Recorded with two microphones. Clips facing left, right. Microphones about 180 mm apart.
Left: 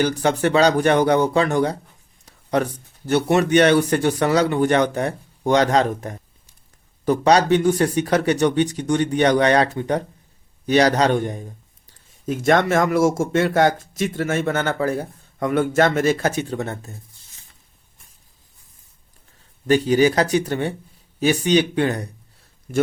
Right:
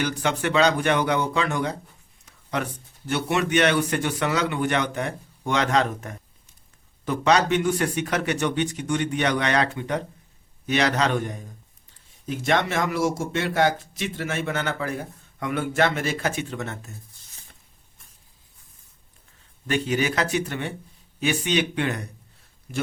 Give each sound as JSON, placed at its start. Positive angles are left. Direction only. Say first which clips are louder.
{"t": 0.0, "sound": "a man's voice", "louder": "left 6 dB", "side_deg": 40}
{"t": 2.2, "sound": "a sound", "louder": "left 8 dB", "side_deg": 40}
{"t": 3.1, "sound": "a man's voice", "louder": "left 7 dB", "side_deg": 40}
{"t": 11.9, "sound": "speech", "louder": "left 6 dB", "side_deg": 50}
{"t": 19.6, "sound": "a man's voice", "louder": "left 8 dB", "side_deg": 35}